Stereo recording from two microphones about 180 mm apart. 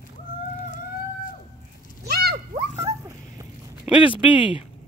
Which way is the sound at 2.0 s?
60° right (ahead or behind).